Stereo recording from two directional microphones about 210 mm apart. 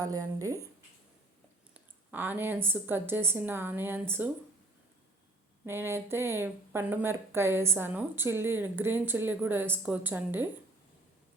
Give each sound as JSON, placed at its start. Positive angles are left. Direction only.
{"t": 0.0, "sound": "speech", "side_deg": -15}
{"t": 1.7, "sound": "speech", "side_deg": -10}
{"t": 5.6, "sound": "speech", "side_deg": -10}